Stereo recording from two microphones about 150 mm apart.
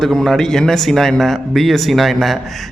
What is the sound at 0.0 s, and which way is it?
A man's voice, centre (ahead or behind).